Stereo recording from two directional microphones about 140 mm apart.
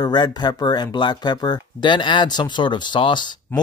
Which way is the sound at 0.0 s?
30° left (ahead or behind).